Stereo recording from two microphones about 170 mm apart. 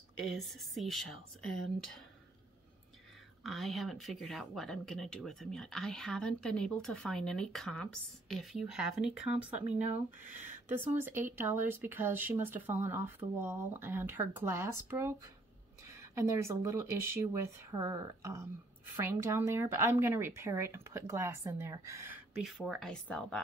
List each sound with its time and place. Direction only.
0.3 s speech: centre (ahead or behind)
3.4 s speech: centre (ahead or behind)
22.4 s speech: centre (ahead or behind)